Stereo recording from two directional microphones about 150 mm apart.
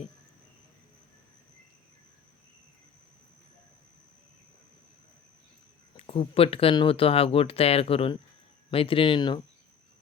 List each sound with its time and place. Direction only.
6.0 s speech: 40° left (ahead or behind)